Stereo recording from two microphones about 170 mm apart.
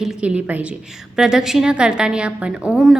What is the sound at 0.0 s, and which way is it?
A woman's voice, 5° right (ahead or behind).